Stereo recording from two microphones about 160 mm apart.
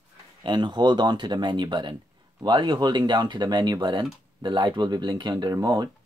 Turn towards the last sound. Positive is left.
turn(degrees=-25)  # may be behind; listen again after turning